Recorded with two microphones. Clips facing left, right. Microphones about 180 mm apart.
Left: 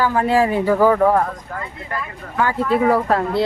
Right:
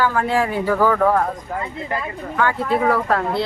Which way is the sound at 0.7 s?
20° left (ahead or behind).